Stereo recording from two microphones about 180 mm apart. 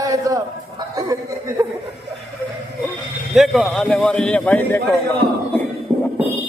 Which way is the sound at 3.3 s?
Centre (ahead or behind).